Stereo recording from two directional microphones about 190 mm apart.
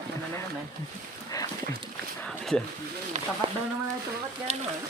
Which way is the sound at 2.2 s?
Centre (ahead or behind).